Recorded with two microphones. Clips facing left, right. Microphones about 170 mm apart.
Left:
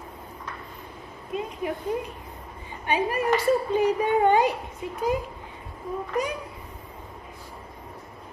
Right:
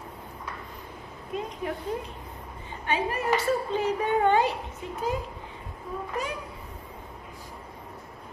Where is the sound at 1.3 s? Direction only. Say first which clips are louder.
Left 2 dB; centre (ahead or behind).